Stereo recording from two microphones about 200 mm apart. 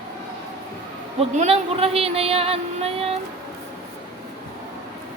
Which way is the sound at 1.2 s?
30° right (ahead or behind).